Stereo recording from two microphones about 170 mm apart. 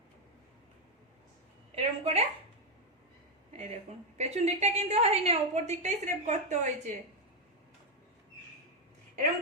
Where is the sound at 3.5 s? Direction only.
40° right (ahead or behind).